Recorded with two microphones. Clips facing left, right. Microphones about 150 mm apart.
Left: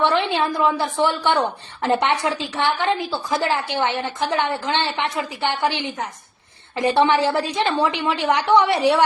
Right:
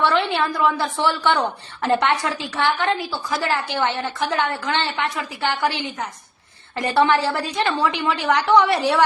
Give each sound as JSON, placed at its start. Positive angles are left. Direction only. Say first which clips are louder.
{"t": 0.0, "sound": "a woman's voice", "louder": "left 1 dB", "side_deg": 20}